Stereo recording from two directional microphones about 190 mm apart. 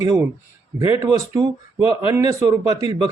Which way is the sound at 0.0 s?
15° right (ahead or behind).